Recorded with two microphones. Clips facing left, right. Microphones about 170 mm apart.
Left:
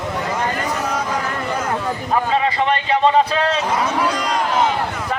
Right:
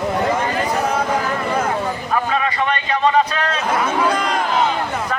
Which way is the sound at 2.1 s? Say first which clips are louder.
Left 2 dB; 25° left (ahead or behind).